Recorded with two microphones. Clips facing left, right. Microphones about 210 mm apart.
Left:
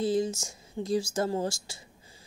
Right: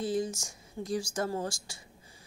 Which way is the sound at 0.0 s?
25° left (ahead or behind).